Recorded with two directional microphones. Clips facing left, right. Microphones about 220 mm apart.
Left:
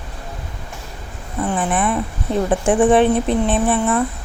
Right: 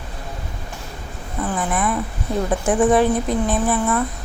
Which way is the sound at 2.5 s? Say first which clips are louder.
Left 2 dB; 30° left (ahead or behind).